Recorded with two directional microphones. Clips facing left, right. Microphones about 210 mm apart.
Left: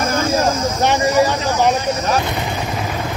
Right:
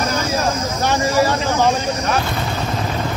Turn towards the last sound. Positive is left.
turn(degrees=20)  # may be behind; listen again after turning